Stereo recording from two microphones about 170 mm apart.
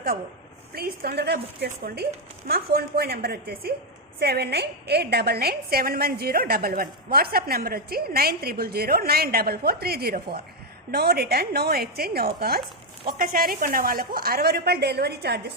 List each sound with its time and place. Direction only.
0.7 s a woman's voice: 65° right (ahead or behind)
1.7 s a woman's voice: 60° right (ahead or behind); by 15.5 s 75° right (ahead or behind)